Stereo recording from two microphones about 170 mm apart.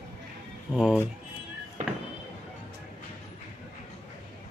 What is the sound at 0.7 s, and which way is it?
Speech, 5° right (ahead or behind).